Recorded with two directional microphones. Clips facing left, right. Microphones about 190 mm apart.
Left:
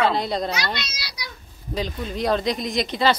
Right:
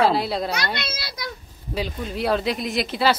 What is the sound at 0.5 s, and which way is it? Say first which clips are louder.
Speech: right 1 dB; 55° right (ahead or behind).